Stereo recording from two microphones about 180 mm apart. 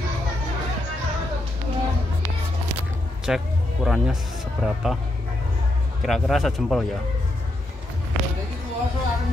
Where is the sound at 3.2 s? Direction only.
Centre (ahead or behind).